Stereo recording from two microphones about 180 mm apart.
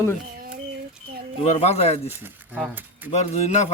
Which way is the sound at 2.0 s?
10° right (ahead or behind).